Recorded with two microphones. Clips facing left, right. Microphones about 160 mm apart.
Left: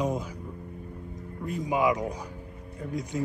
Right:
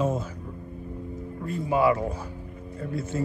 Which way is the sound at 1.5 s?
15° left (ahead or behind).